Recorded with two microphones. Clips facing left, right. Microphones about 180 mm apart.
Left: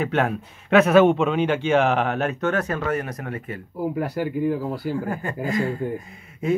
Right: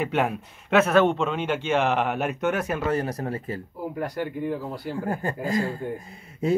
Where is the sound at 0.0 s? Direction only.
10° right (ahead or behind).